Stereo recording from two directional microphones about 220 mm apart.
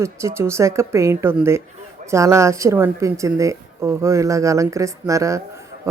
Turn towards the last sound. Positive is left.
turn(degrees=-15)  # may be behind; listen again after turning